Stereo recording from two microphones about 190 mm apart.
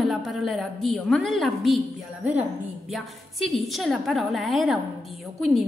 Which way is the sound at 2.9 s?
Centre (ahead or behind).